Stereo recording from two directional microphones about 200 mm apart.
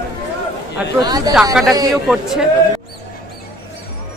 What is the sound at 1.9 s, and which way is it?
Speech, centre (ahead or behind).